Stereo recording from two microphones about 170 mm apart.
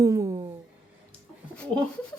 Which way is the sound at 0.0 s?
20° right (ahead or behind).